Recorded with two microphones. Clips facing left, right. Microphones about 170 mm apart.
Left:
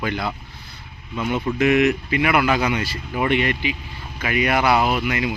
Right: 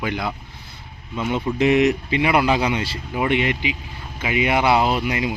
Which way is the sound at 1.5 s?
30° right (ahead or behind).